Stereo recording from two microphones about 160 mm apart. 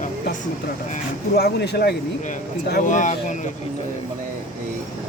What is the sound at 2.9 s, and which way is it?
Speech, 50° left (ahead or behind).